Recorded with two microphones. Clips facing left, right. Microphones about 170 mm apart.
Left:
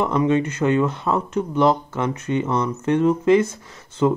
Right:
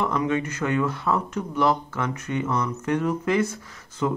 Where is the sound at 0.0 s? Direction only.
25° left (ahead or behind).